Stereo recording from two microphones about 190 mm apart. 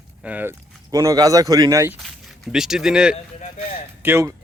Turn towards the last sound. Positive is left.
turn(degrees=-15)  # may be behind; listen again after turning